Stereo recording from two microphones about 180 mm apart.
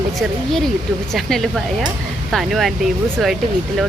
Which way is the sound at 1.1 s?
Centre (ahead or behind).